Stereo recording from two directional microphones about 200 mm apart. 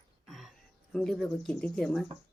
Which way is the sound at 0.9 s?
5° left (ahead or behind).